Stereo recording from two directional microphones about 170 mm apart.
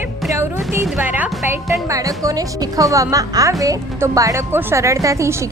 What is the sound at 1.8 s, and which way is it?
A woman's voice, 20° right (ahead or behind).